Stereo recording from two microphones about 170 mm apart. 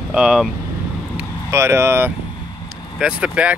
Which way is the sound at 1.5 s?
15° right (ahead or behind).